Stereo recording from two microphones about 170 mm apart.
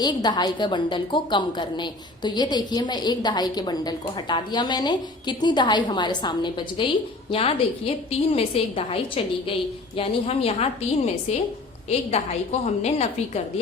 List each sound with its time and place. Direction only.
0.0 s a woman's voice: 25° left (ahead or behind); by 13.4 s 40° left (ahead or behind)